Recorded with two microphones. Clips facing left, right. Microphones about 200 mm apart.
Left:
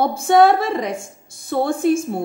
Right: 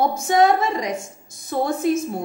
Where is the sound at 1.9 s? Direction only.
30° left (ahead or behind).